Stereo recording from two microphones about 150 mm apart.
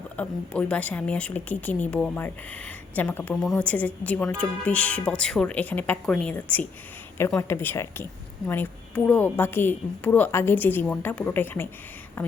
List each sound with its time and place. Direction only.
0.2 s a woman's voice: 10° left (ahead or behind)